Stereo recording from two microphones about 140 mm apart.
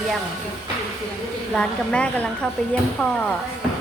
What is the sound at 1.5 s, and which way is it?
A woman's voice, 5° left (ahead or behind).